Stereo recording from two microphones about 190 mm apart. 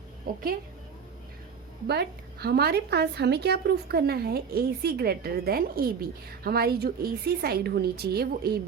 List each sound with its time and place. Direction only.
1.9 s a woman's voice: 60° right (ahead or behind)